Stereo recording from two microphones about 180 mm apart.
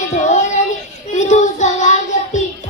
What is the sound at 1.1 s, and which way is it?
Child singing, 40° left (ahead or behind).